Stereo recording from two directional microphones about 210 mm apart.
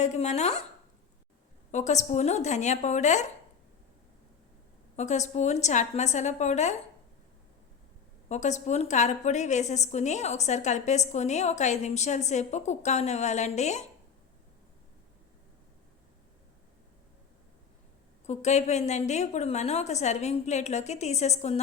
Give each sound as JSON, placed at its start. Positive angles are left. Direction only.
{"t": 0.0, "sound": "a woman's voice", "side_deg": 35}
{"t": 1.7, "sound": "a woman's voice", "side_deg": 35}
{"t": 4.9, "sound": "a woman's voice", "side_deg": 35}
{"t": 8.3, "sound": "a woman's voice", "side_deg": 35}
{"t": 18.3, "sound": "a woman's voice", "side_deg": 35}